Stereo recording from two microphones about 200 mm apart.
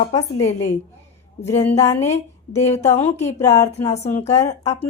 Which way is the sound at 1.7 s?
15° left (ahead or behind).